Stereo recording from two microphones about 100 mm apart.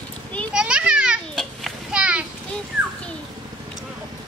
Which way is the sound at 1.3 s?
5° left (ahead or behind).